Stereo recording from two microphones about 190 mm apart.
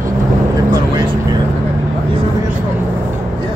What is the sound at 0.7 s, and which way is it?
Vehicle, 20° right (ahead or behind).